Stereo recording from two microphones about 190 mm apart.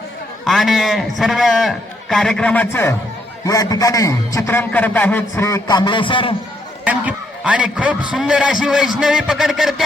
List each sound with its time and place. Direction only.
0.4 s a man's voice: centre (ahead or behind); by 6.3 s 25° left (ahead or behind)
6.8 s a man's voice: 5° right (ahead or behind)